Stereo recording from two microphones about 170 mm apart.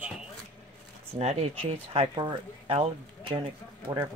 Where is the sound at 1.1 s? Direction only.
40° right (ahead or behind).